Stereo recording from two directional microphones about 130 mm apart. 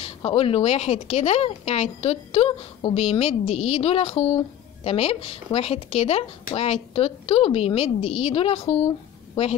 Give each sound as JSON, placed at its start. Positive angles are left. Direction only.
{"t": 0.0, "sound": "speech", "side_deg": 50}